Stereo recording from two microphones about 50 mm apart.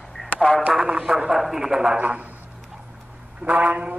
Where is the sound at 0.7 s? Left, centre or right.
Centre.